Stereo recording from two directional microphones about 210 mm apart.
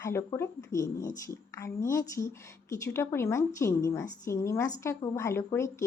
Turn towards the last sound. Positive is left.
turn(degrees=10)  # may be behind; listen again after turning